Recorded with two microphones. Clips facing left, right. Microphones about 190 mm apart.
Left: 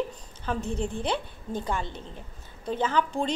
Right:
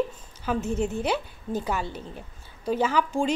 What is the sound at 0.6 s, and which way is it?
Speech, 30° left (ahead or behind).